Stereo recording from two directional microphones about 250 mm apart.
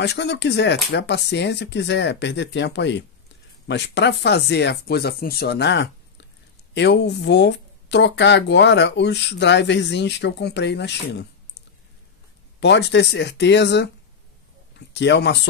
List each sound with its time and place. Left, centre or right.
0.0 s speech: left
12.5 s speech: left